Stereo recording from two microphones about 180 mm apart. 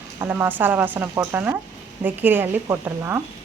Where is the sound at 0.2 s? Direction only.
10° right (ahead or behind).